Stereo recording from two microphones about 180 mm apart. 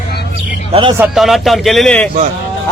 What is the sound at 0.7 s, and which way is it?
Speech, 25° right (ahead or behind).